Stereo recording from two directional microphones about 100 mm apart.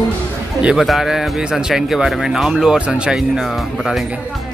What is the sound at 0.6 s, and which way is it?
Speech, 5° right (ahead or behind).